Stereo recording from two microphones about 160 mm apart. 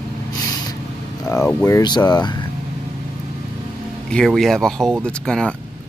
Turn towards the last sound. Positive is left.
turn(degrees=5)  # may be behind; listen again after turning